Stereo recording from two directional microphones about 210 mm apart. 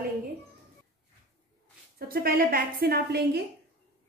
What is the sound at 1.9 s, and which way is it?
A woman's voice, 45° right (ahead or behind).